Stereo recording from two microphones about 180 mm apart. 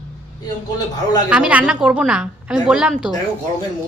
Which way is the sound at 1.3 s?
5° right (ahead or behind).